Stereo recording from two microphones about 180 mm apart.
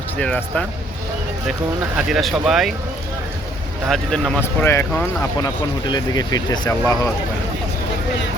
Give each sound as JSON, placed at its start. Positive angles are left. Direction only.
{"t": 0.2, "sound": "speech", "side_deg": 5}
{"t": 2.0, "sound": "speech", "side_deg": 0}
{"t": 3.8, "sound": "speech", "side_deg": 0}
{"t": 4.6, "sound": "speech", "side_deg": 15}